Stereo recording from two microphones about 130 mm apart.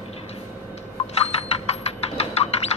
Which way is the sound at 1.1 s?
55° left (ahead or behind).